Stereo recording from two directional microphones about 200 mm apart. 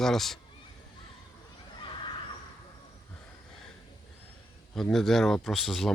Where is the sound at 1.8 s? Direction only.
25° left (ahead or behind).